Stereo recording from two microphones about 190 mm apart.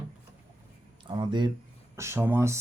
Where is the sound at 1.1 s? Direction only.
25° right (ahead or behind).